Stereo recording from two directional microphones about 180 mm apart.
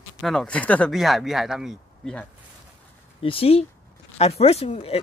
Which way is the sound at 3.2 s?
30° left (ahead or behind).